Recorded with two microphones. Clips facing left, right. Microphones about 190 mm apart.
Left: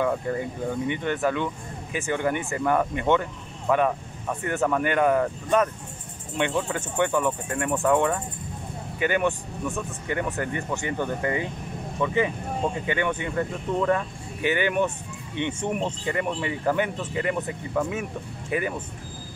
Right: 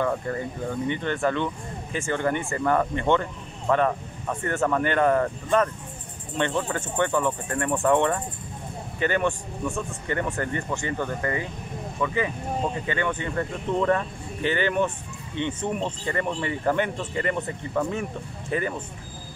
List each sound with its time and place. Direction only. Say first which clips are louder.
0.0 s speech: left 1 dB; 10° left (ahead or behind)